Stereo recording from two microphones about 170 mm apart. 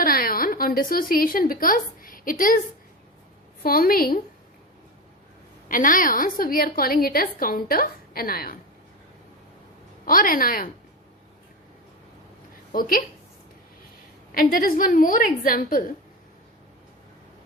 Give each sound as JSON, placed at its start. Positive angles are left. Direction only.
{"t": 0.0, "sound": "a sound", "side_deg": 55}
{"t": 3.6, "sound": "a woman's voice", "side_deg": 60}
{"t": 5.6, "sound": "a woman's voice", "side_deg": 50}
{"t": 10.1, "sound": "a woman's voice", "side_deg": 55}
{"t": 12.7, "sound": "a woman's voice", "side_deg": 55}
{"t": 14.3, "sound": "a woman's voice", "side_deg": 55}